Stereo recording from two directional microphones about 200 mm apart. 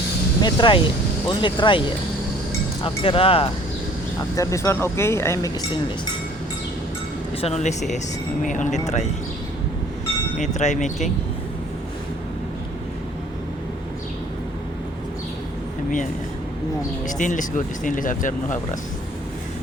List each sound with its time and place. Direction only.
0.4 s speech: 25° left (ahead or behind)
2.8 s speech: 25° left (ahead or behind)
4.4 s speech: 15° left (ahead or behind)
7.4 s speech: 35° left (ahead or behind)
10.3 s speech: 35° left (ahead or behind)
17.1 s speech: 40° left (ahead or behind)